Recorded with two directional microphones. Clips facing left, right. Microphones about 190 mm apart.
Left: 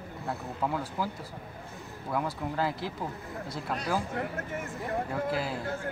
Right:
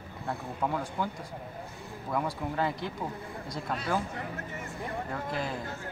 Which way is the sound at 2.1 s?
Centre (ahead or behind).